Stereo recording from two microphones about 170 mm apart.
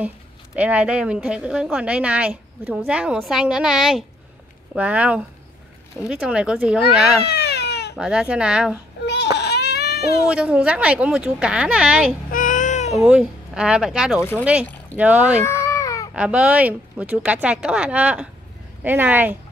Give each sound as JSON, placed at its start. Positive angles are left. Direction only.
{"t": 0.6, "sound": "a woman's voice", "side_deg": -10}
{"t": 7.2, "sound": "baby cry", "side_deg": 75}
{"t": 8.0, "sound": "speech", "side_deg": -5}
{"t": 9.0, "sound": "baby cry", "side_deg": 80}
{"t": 10.2, "sound": "speech", "side_deg": -5}
{"t": 12.3, "sound": "child singing", "side_deg": 50}
{"t": 12.9, "sound": "a woman's voice", "side_deg": -5}
{"t": 15.4, "sound": "baby cry", "side_deg": 15}
{"t": 16.1, "sound": "a woman's voice", "side_deg": -5}